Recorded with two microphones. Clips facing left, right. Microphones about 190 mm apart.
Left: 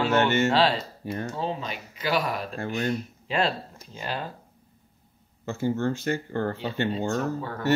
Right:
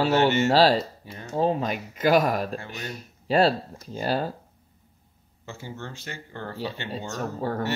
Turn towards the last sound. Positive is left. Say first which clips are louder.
# right 1 dB
turn(degrees=-40)  # may be behind; listen again after turning